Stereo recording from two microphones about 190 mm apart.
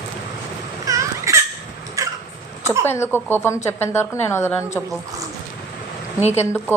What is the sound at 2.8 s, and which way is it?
A woman's voice, 10° left (ahead or behind).